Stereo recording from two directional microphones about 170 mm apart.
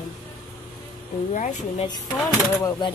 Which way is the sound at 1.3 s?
45° left (ahead or behind).